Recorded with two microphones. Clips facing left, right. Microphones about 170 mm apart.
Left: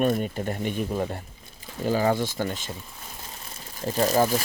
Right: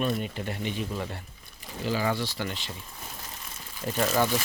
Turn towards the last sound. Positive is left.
turn(degrees=35)  # may be behind; listen again after turning